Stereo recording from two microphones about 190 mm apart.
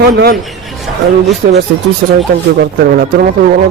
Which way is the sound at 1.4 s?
50° right (ahead or behind).